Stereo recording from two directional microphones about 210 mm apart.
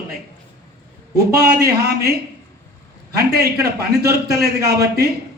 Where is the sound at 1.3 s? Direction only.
50° right (ahead or behind).